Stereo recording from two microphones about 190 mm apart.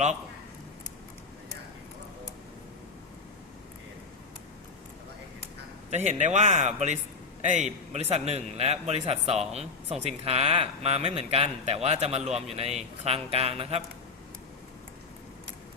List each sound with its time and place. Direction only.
5.9 s a man's voice: 35° right (ahead or behind)